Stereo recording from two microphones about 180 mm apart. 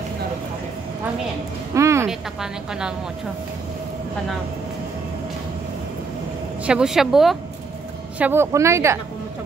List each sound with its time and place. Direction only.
1.7 s a sound: 15° right (ahead or behind)
2.0 s a woman's voice: 5° right (ahead or behind)
6.6 s a woman's voice: 5° right (ahead or behind)
8.2 s a woman's voice: 10° right (ahead or behind)